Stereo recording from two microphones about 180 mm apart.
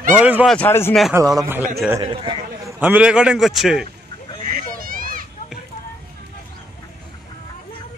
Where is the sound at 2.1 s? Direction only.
30° right (ahead or behind).